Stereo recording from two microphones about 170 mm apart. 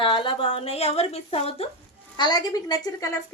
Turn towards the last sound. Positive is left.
turn(degrees=20)  # may be behind; listen again after turning